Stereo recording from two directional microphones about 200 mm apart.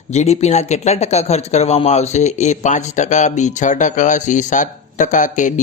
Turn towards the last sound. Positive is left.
turn(degrees=40)  # may be behind; listen again after turning